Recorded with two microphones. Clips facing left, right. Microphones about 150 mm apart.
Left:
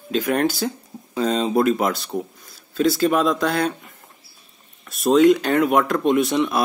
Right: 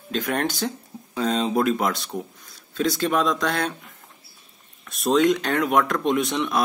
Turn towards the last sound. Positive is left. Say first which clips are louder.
# left 4 dB
turn(degrees=5)  # may be behind; listen again after turning